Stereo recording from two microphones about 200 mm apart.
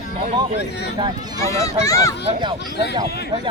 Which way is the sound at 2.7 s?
60° left (ahead or behind).